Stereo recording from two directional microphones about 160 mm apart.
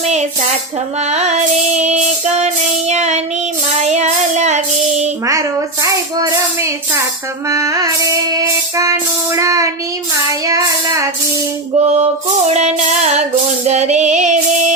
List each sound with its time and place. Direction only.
1.1 s music: 45° right (ahead or behind)
5.2 s music: 20° right (ahead or behind)
10.4 s child singing: 20° right (ahead or behind)
11.8 s music: 45° right (ahead or behind)